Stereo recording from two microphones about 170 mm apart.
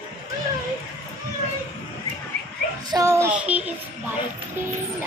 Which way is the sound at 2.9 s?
20° right (ahead or behind).